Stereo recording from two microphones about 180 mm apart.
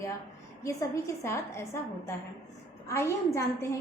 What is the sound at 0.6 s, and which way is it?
A woman's voice, 15° left (ahead or behind).